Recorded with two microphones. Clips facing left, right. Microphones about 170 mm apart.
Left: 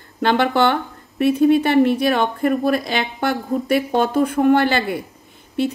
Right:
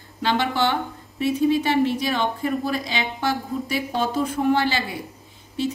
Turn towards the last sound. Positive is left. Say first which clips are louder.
# left 5 dB
turn(degrees=60)  # may be behind; listen again after turning